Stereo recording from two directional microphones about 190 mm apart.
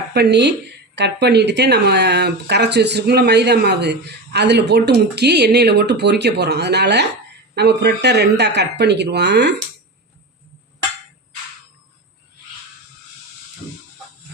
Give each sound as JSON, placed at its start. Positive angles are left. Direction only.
{"t": 0.1, "sound": "speech", "side_deg": -60}